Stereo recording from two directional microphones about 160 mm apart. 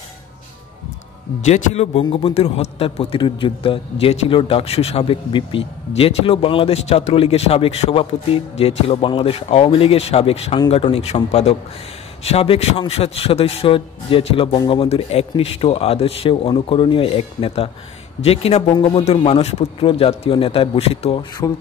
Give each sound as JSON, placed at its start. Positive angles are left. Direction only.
{"t": 1.4, "sound": "speech", "side_deg": 45}
{"t": 2.0, "sound": "a man's voice", "side_deg": 35}